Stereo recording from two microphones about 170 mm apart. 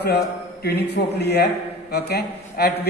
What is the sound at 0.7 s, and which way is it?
A man's voice, 75° left (ahead or behind).